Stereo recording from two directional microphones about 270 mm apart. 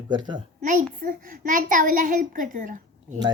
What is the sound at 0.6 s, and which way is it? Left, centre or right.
A child's voice, right.